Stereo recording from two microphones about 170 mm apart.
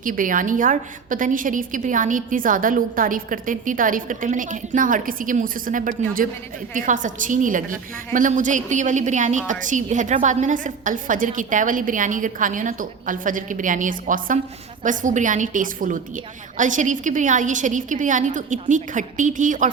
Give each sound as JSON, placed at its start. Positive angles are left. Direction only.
{"t": 0.0, "sound": "a woman's voice", "side_deg": -55}